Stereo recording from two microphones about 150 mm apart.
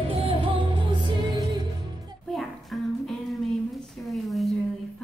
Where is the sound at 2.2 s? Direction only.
Centre (ahead or behind).